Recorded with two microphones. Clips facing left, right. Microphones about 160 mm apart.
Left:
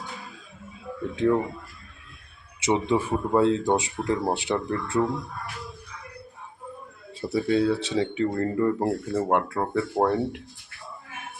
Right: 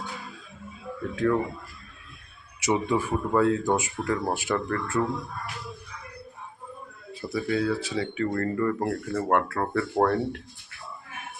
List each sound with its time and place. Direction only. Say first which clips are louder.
1.1 s speech: left 2 dB; 25° left (ahead or behind)
2.6 s speech: left 2 dB; 25° left (ahead or behind)
7.1 s speech: left 4 dB; 30° left (ahead or behind)